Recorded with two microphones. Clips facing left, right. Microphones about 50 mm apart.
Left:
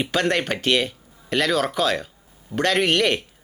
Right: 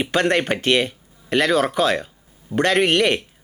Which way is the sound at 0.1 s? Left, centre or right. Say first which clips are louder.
Right 4 dB; right.